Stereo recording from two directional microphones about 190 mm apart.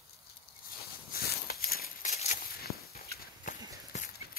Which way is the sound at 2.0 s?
35° left (ahead or behind).